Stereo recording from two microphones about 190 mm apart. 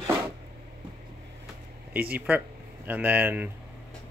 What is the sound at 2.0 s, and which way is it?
Speech, 10° right (ahead or behind).